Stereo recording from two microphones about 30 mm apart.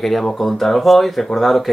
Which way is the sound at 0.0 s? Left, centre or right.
Centre.